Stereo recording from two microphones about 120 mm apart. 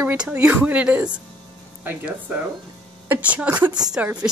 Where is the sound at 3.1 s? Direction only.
10° right (ahead or behind).